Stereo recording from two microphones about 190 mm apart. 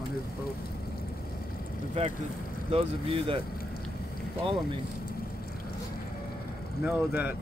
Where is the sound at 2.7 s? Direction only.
30° right (ahead or behind).